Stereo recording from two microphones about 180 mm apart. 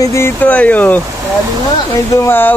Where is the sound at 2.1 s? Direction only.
15° left (ahead or behind).